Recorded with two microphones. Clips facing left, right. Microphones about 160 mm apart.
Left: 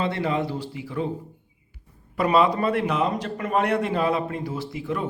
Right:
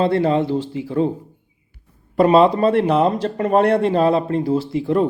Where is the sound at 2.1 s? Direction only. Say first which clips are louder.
Right 7 dB; 30° right (ahead or behind).